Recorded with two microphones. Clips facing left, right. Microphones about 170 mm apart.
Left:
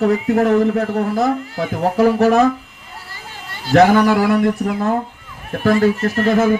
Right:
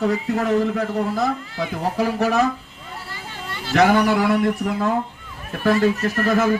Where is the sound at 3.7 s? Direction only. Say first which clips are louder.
Left 5 dB; 45° left (ahead or behind).